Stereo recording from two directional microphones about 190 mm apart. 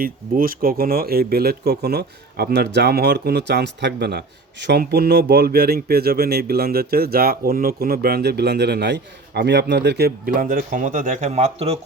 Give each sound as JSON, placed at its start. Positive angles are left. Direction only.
{"t": 0.0, "sound": "speech", "side_deg": -50}